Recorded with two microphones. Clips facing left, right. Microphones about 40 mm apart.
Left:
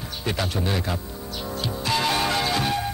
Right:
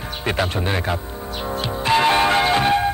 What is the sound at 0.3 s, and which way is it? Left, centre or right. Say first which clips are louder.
Music: right 4 dB; right.